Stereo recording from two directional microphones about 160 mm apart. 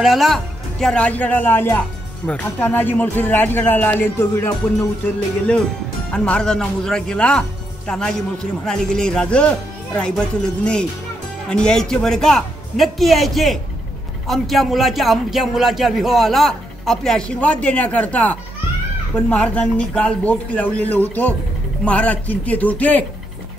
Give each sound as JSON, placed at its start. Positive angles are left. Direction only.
{"t": 0.0, "sound": "speech", "side_deg": 0}
{"t": 6.1, "sound": "speech", "side_deg": 5}